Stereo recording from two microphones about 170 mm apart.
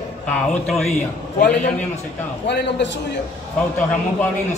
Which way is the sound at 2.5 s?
90° left.